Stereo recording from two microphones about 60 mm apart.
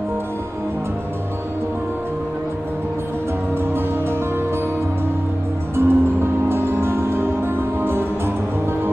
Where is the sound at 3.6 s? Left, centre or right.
Right.